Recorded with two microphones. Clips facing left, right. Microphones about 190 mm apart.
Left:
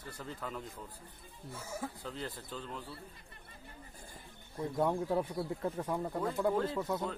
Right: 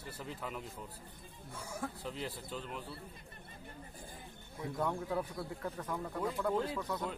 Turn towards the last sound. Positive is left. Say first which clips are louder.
# left 3 dB
turn(degrees=25)  # may be behind; listen again after turning